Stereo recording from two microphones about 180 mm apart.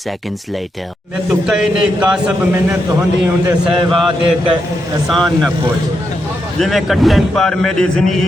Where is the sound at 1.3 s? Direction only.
5° right (ahead or behind).